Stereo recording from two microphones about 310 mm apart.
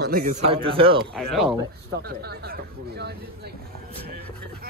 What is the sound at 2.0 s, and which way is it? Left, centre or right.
Speech, right.